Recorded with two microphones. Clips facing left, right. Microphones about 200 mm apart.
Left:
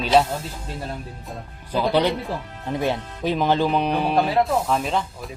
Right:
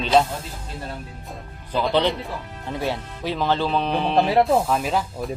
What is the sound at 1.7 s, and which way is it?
Speech, 10° left (ahead or behind).